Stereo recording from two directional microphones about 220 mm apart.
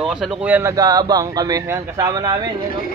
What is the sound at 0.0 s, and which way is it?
A man's voice, 5° right (ahead or behind).